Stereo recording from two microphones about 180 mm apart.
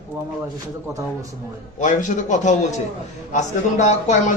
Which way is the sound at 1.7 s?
40° left (ahead or behind).